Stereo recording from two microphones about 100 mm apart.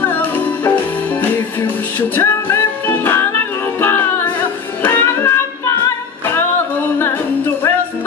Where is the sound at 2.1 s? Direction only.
20° left (ahead or behind).